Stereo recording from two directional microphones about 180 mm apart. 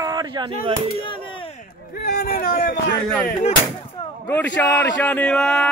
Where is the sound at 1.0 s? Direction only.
30° left (ahead or behind).